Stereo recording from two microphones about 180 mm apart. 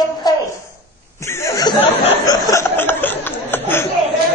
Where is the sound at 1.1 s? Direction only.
15° left (ahead or behind).